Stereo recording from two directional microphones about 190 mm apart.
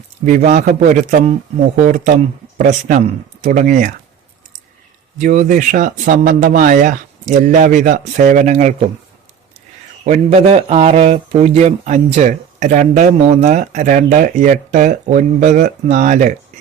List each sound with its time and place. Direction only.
0.3 s speech: 45° right (ahead or behind)
5.1 s speech: 40° right (ahead or behind)
10.0 s speech: 35° right (ahead or behind)